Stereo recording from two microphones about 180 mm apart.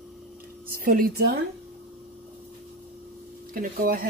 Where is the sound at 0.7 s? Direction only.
55° right (ahead or behind).